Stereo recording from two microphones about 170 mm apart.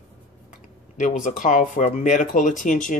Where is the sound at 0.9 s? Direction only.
50° left (ahead or behind).